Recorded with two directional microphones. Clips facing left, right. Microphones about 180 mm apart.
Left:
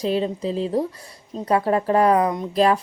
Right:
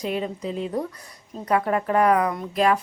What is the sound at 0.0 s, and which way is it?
A woman's voice, 30° left (ahead or behind).